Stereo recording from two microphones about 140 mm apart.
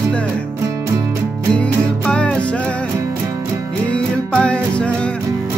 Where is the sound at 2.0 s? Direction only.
10° left (ahead or behind).